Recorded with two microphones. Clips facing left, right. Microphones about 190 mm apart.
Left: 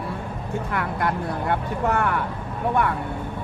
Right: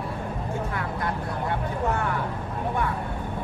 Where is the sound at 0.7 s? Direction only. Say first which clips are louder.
Left 4 dB; 70° left (ahead or behind).